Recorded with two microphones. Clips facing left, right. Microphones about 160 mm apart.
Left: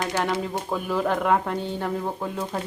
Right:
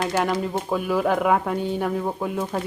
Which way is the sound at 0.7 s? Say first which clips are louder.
Right 3 dB; 10° right (ahead or behind).